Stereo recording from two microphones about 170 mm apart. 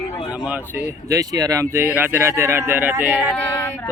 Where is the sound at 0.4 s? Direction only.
5° right (ahead or behind).